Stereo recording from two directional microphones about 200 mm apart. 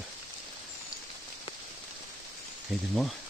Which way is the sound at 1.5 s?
25° left (ahead or behind).